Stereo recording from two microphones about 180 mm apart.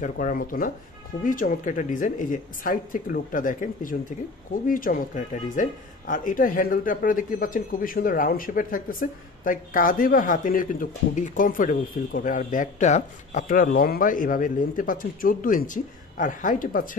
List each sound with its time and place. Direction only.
0.0 s speech: 45° left (ahead or behind)